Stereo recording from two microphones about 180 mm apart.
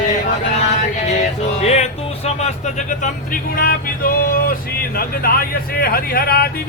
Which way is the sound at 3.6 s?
55° left (ahead or behind).